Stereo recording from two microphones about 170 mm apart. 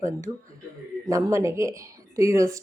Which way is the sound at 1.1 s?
15° right (ahead or behind).